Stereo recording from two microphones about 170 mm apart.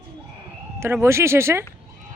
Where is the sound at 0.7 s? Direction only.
15° right (ahead or behind).